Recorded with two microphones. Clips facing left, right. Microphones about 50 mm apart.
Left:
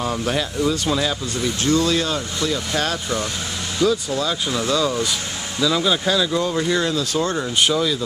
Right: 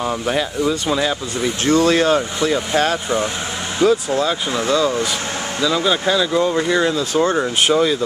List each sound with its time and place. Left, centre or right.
0.0 s speech: centre
1.6 s speech: right
2.4 s speech: right
5.6 s speech: centre; by 8.0 s right